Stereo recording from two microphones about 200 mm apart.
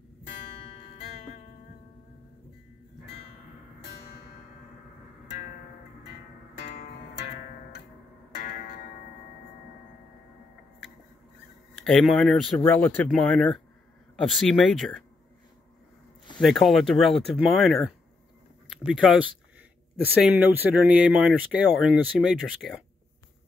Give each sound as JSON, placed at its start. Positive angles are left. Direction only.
{"t": 8.4, "sound": "music", "side_deg": 45}
{"t": 11.7, "sound": "speech", "side_deg": 0}
{"t": 16.3, "sound": "speech", "side_deg": 0}